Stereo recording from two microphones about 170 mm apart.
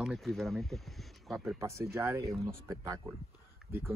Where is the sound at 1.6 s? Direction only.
15° right (ahead or behind).